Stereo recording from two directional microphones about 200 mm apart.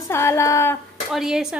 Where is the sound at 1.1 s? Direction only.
Centre (ahead or behind).